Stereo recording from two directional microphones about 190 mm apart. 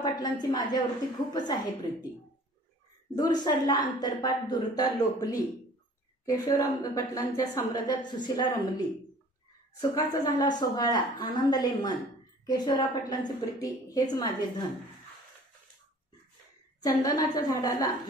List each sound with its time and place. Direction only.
0.0 s a woman's voice: 20° left (ahead or behind)
3.2 s a woman's voice: 20° left (ahead or behind)
16.8 s a woman's voice: 20° left (ahead or behind)